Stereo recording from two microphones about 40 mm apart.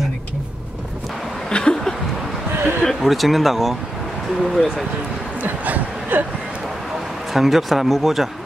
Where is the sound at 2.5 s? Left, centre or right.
Right.